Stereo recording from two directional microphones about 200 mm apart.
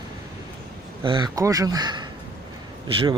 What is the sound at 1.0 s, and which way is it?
Speech, 25° right (ahead or behind).